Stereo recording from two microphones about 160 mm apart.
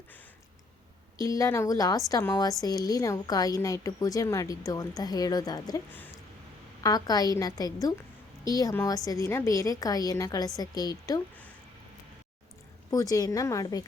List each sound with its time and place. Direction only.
1.2 s a woman's voice: 20° left (ahead or behind)
6.8 s a woman's voice: 25° left (ahead or behind)
12.9 s a woman's voice: 20° left (ahead or behind)